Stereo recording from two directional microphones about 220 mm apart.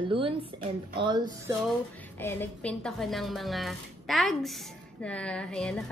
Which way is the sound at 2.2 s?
10° left (ahead or behind).